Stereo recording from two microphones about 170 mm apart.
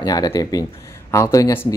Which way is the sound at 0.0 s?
25° left (ahead or behind).